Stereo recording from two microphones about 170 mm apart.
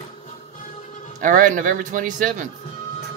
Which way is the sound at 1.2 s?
50° right (ahead or behind).